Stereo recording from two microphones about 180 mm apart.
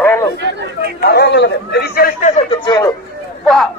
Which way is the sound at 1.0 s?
65° left (ahead or behind).